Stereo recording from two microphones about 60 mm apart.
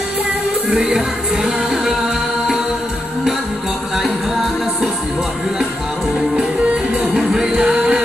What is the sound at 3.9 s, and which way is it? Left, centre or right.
Music, centre.